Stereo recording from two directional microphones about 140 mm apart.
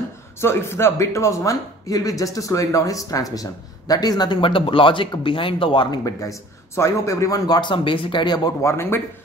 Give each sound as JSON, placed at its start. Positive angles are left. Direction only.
{"t": 0.4, "sound": "speech", "side_deg": 15}
{"t": 8.6, "sound": "speech", "side_deg": 20}